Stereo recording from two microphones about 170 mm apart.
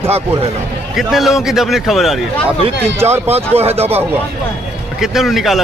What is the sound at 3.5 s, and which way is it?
Speech, 35° right (ahead or behind).